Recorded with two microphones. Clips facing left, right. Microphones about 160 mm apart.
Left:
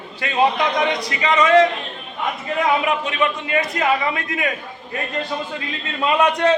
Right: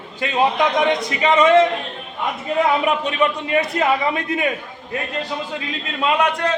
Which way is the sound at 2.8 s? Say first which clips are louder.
Right 2 dB; 30° right (ahead or behind).